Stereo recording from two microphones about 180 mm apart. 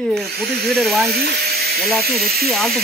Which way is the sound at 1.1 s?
65° right (ahead or behind).